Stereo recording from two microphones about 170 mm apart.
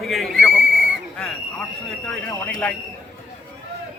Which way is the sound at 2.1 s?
5° left (ahead or behind).